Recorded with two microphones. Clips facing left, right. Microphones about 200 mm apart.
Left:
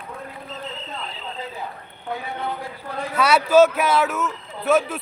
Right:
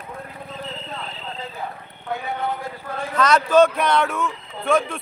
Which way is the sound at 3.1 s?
10° left (ahead or behind).